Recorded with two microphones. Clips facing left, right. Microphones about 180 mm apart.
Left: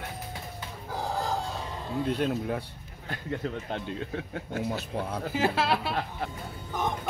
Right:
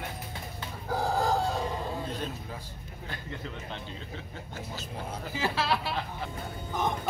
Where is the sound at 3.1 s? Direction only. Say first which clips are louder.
Left 7 dB; 50° left (ahead or behind).